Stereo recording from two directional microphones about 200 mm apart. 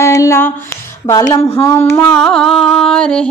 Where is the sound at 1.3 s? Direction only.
15° left (ahead or behind).